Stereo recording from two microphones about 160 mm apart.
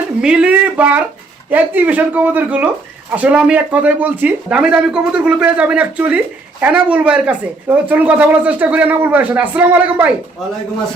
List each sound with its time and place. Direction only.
0.2 s speech: 5° right (ahead or behind)